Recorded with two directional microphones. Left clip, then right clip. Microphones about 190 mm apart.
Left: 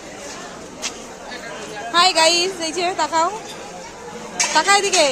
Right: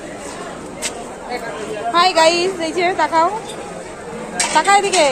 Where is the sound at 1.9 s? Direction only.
20° left (ahead or behind).